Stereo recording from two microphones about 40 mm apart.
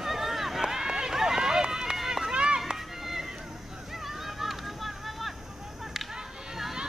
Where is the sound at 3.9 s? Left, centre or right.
Centre.